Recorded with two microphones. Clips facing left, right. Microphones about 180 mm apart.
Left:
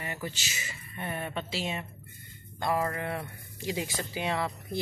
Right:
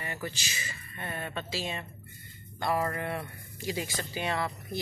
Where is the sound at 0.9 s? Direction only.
15° left (ahead or behind).